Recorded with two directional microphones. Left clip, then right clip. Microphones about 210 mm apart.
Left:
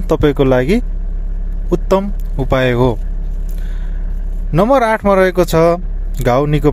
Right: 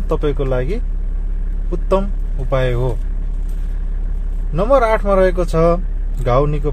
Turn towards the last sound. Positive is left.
turn(degrees=35)  # may be behind; listen again after turning